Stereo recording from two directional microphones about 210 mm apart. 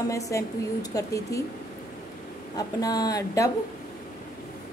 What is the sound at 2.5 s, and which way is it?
Speech, 15° left (ahead or behind).